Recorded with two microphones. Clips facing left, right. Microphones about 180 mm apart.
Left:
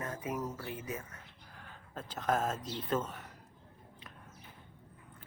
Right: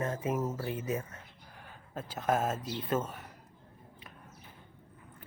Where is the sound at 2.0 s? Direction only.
10° right (ahead or behind).